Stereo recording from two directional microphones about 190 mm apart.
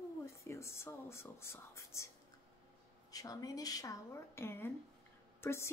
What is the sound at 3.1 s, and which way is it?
Speech, 20° left (ahead or behind).